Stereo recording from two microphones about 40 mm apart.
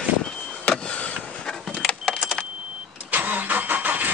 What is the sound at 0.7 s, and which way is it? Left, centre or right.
Vehicle, left.